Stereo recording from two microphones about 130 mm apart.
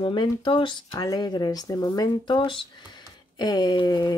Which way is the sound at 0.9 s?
30° left (ahead or behind).